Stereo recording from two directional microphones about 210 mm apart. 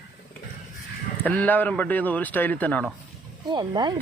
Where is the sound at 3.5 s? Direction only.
20° right (ahead or behind).